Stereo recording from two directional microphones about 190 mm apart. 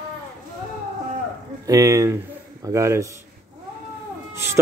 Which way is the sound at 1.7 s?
15° right (ahead or behind).